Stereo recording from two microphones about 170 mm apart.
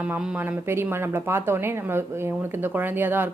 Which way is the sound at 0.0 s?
5° right (ahead or behind).